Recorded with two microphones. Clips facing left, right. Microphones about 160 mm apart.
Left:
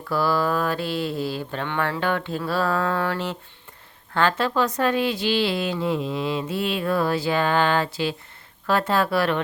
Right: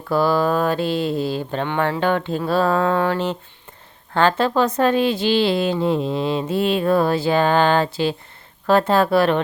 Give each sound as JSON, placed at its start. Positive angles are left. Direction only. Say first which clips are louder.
{"t": 0.1, "sound": "speech", "louder": "right 4 dB", "side_deg": -20}